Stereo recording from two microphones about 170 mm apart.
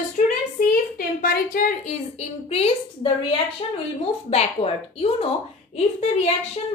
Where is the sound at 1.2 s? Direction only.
55° left (ahead or behind).